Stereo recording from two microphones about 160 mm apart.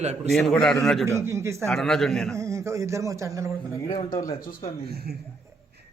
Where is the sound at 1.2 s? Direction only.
15° right (ahead or behind).